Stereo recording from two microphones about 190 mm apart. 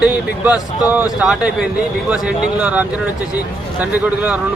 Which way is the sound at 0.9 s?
5° right (ahead or behind).